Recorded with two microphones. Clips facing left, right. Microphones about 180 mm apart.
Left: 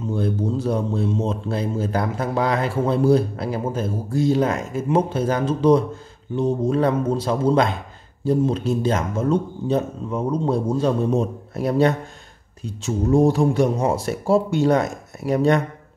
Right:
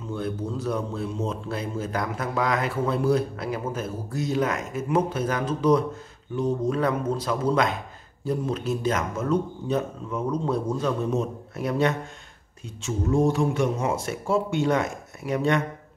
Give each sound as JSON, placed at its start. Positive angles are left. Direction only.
{"t": 0.1, "sound": "speech", "side_deg": 30}